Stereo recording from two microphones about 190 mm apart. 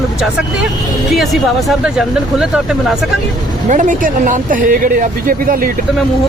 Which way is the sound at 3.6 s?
45° right (ahead or behind).